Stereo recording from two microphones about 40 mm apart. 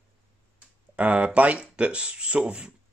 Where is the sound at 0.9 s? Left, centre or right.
Right.